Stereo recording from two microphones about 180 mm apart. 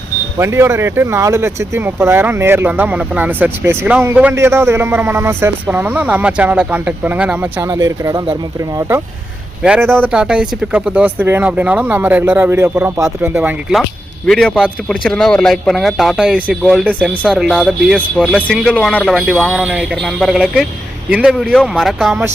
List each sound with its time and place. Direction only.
0.3 s speech: 15° right (ahead or behind)
9.6 s a man's voice: 10° right (ahead or behind)